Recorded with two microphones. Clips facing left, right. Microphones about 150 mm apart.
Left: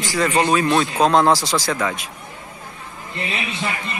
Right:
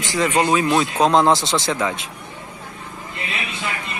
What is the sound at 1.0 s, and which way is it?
Speech, 20° right (ahead or behind).